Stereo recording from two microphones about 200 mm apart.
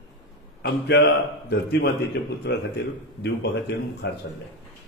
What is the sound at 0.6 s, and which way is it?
A man's voice, 55° left (ahead or behind).